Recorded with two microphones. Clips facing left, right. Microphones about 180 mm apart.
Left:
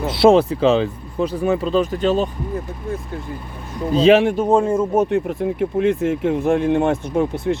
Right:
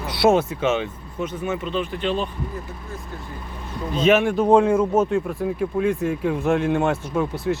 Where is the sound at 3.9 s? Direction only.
30° left (ahead or behind).